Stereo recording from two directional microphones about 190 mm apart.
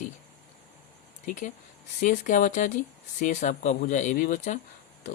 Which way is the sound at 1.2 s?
45° left (ahead or behind).